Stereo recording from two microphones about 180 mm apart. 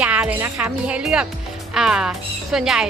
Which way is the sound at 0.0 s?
5° right (ahead or behind).